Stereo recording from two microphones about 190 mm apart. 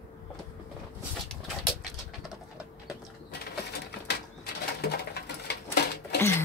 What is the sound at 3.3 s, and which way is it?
Bird, 55° left (ahead or behind).